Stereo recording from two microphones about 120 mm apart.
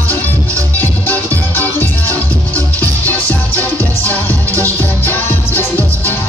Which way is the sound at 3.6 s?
15° left (ahead or behind).